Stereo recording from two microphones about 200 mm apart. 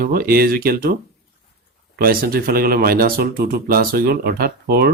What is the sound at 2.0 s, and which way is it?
Speech, 50° right (ahead or behind).